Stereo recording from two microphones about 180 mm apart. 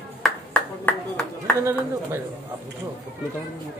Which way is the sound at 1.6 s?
15° right (ahead or behind).